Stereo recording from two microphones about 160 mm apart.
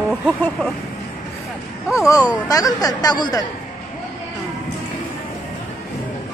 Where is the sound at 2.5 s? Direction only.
20° left (ahead or behind).